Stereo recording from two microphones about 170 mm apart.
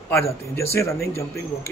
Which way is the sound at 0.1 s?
15° left (ahead or behind).